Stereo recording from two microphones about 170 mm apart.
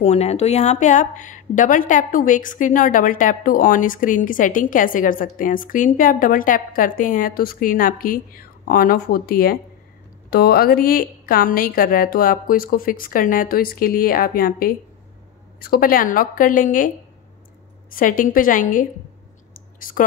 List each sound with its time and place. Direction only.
0.0 s a woman's voice: 40° left (ahead or behind)